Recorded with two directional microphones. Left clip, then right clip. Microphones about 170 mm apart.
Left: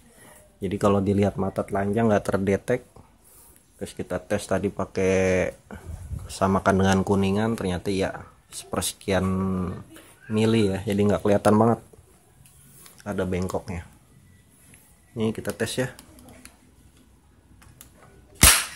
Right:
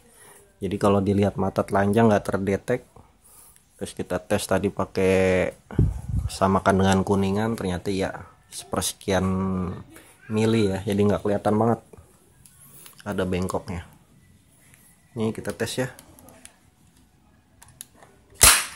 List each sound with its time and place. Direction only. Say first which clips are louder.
0.2 s speech: even; 5° right (ahead or behind)
1.5 s speech: right 4 dB; 20° right (ahead or behind)
2.0 s speech: right 1 dB; centre (ahead or behind)
3.8 s speech: right 2 dB; 10° right (ahead or behind)
11.2 s speech: left 3 dB; 10° left (ahead or behind)
12.8 s speech: right 1 dB; 10° right (ahead or behind)
15.1 s speech: even; centre (ahead or behind)